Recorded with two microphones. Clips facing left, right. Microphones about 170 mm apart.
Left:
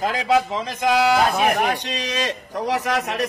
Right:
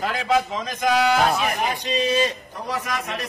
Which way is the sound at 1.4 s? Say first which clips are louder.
Left 5 dB; 65° left (ahead or behind).